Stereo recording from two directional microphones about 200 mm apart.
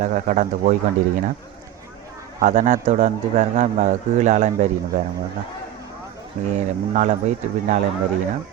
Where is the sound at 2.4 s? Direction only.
35° right (ahead or behind).